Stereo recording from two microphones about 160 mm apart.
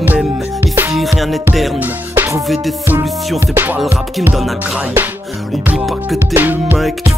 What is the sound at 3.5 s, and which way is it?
Music, 10° right (ahead or behind).